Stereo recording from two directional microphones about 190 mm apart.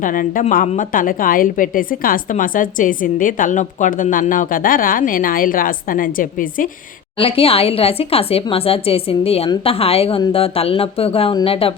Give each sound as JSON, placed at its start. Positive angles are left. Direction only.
{"t": 0.0, "sound": "a woman's voice", "side_deg": 45}
{"t": 7.2, "sound": "a woman's voice", "side_deg": 30}